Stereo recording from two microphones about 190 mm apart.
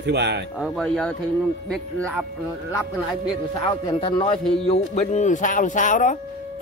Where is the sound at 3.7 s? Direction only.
25° left (ahead or behind); by 6.2 s 40° left (ahead or behind).